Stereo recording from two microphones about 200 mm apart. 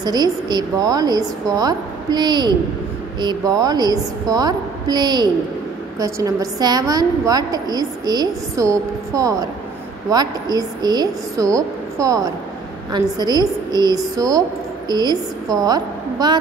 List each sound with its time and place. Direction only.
0.0 s a woman's voice: 20° right (ahead or behind)